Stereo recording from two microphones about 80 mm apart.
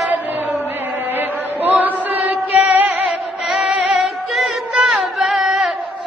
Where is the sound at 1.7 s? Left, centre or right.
Right.